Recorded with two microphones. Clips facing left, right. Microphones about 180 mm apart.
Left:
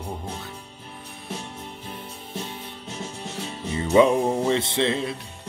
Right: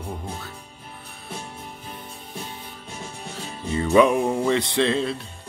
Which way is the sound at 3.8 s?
25° left (ahead or behind).